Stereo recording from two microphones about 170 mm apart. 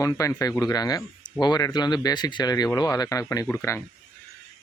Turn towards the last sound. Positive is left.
turn(degrees=15)  # may be behind; listen again after turning